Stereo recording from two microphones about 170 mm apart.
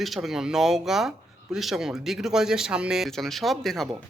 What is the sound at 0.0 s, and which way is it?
Speech, centre (ahead or behind).